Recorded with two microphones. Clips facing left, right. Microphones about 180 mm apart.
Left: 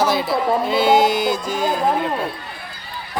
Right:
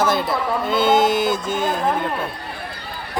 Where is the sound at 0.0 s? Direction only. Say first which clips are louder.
Left 1 dB; centre (ahead or behind).